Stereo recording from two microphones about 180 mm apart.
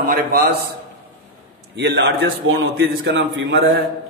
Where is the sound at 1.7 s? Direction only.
75° right (ahead or behind); by 3.7 s 90° right.